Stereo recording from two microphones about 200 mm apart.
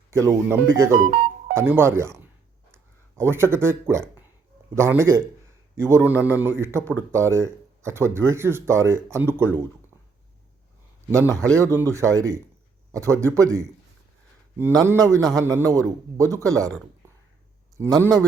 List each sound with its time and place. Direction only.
0.1 s a man's voice: 15° right (ahead or behind)
11.5 s a man's voice: 15° right (ahead or behind)
17.7 s a man's voice: 15° right (ahead or behind)